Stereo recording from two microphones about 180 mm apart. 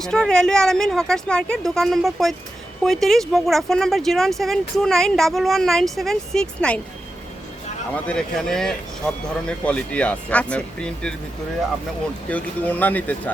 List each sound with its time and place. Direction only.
0.0 s speech: 5° left (ahead or behind)
8.0 s speech: 5° left (ahead or behind)
12.3 s speech: 10° left (ahead or behind)